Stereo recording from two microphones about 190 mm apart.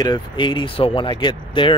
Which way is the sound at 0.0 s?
25° left (ahead or behind).